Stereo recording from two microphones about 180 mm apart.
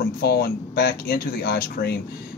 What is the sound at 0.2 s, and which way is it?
Speech, 60° left (ahead or behind).